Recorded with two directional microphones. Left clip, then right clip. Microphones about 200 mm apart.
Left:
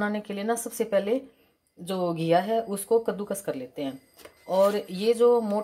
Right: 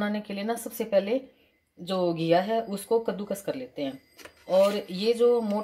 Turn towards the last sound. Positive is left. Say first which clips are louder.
# left 2 dB
turn(degrees=0)  # may be behind; listen again after turning